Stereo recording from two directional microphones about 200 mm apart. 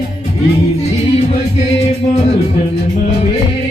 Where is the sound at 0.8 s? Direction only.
30° left (ahead or behind).